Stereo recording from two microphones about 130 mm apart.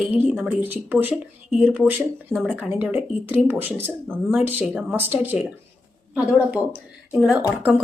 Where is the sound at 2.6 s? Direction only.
15° right (ahead or behind).